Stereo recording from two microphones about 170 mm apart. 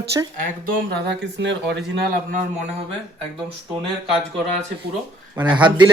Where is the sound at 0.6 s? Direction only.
85° right.